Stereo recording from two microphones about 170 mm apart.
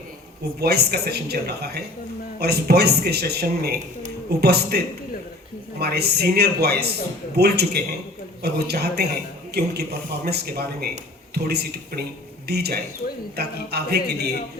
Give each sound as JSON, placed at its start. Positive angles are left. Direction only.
{"t": 0.6, "sound": "speech", "side_deg": -70}
{"t": 5.8, "sound": "speech", "side_deg": -75}